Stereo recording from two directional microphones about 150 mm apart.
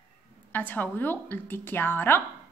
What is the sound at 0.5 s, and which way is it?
A woman's voice, 10° left (ahead or behind).